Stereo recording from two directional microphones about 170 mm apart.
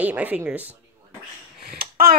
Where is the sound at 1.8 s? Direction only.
60° right (ahead or behind).